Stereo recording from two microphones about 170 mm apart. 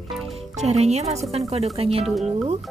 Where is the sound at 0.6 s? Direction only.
40° right (ahead or behind).